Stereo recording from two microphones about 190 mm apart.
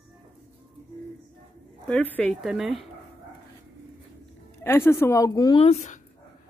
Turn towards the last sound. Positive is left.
turn(degrees=35)  # may be behind; listen again after turning